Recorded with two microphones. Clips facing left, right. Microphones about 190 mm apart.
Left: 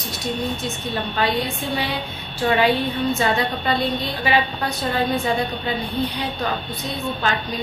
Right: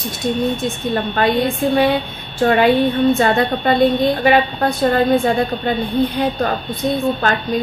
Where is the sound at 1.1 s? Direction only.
55° right (ahead or behind).